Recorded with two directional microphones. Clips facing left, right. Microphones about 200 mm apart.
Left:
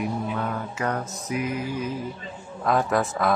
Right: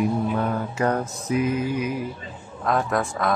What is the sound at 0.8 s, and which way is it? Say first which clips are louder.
Music: right 5 dB; 30° right (ahead or behind).